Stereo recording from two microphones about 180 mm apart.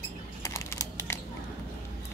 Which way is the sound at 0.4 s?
15° left (ahead or behind).